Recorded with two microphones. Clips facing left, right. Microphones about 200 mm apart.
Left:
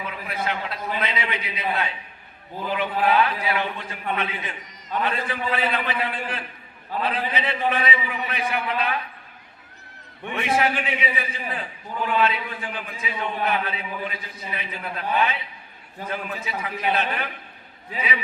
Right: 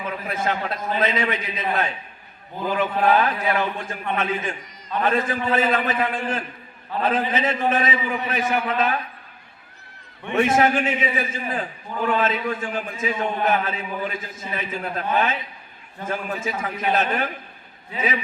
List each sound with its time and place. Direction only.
0.3 s a man's voice: 45° right (ahead or behind)
10.3 s a man's voice: 45° right (ahead or behind)